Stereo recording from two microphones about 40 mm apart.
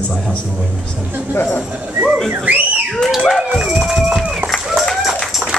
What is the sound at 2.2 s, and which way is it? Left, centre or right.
Speech, right.